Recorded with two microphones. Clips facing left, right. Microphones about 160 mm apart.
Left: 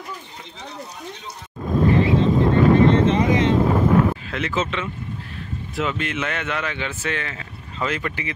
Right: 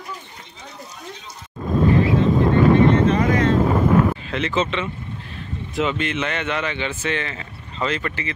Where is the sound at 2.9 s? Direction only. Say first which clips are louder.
Even; 25° left (ahead or behind).